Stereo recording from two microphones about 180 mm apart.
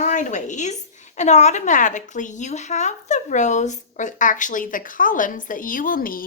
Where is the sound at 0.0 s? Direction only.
40° left (ahead or behind).